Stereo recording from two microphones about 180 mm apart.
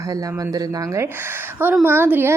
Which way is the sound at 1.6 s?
10° right (ahead or behind).